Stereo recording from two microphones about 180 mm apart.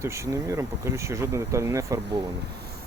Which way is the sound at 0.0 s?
15° right (ahead or behind).